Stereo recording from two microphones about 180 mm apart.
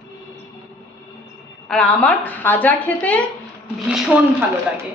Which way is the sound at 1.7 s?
5° left (ahead or behind).